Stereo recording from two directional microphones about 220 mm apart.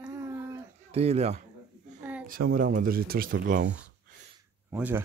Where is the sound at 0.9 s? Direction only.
30° right (ahead or behind).